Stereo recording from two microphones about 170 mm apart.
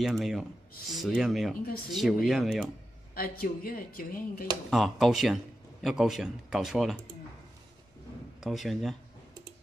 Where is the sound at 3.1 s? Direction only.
60° left (ahead or behind).